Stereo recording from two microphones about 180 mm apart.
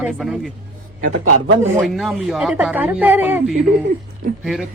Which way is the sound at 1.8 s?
Centre (ahead or behind).